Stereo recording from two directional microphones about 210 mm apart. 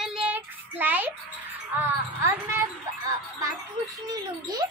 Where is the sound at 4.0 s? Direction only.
20° right (ahead or behind).